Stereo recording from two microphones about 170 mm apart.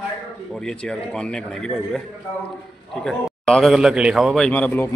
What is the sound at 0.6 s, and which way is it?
A man's voice, 5° left (ahead or behind).